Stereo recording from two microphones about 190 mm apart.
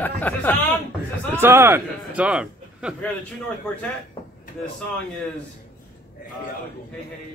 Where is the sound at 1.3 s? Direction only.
15° right (ahead or behind).